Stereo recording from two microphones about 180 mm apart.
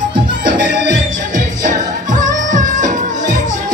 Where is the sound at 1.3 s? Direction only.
45° right (ahead or behind).